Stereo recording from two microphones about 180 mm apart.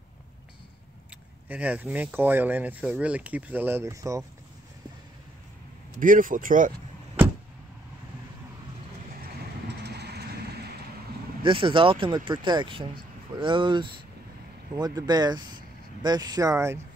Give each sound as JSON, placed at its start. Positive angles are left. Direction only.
{"t": 1.5, "sound": "speech", "side_deg": -10}
{"t": 5.9, "sound": "speech", "side_deg": -50}
{"t": 9.7, "sound": "vehicle", "side_deg": -65}
{"t": 11.4, "sound": "speech", "side_deg": -30}